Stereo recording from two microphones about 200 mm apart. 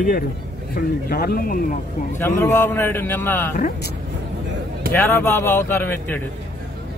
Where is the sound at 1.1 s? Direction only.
50° left (ahead or behind).